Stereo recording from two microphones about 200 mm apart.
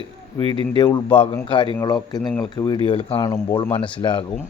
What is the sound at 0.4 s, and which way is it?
Speech, 25° right (ahead or behind).